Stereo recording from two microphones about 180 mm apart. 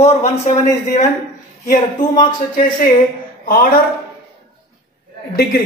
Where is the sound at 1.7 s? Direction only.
50° left (ahead or behind).